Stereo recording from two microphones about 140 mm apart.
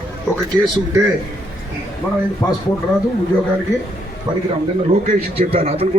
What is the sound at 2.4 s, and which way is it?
Speech, 10° left (ahead or behind).